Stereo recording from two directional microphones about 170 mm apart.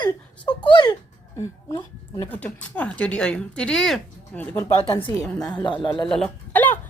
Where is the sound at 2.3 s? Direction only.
10° left (ahead or behind).